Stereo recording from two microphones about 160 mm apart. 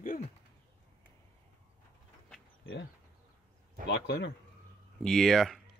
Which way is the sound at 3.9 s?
90° left.